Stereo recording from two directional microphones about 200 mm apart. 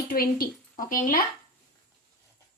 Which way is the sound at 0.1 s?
45° left (ahead or behind).